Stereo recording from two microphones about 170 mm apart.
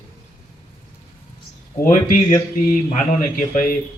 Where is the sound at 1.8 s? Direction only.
55° left (ahead or behind).